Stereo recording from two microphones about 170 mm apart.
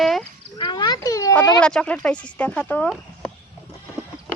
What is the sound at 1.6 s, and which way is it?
Speech, 5° left (ahead or behind).